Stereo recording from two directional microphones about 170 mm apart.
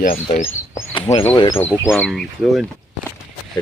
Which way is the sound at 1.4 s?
30° left (ahead or behind).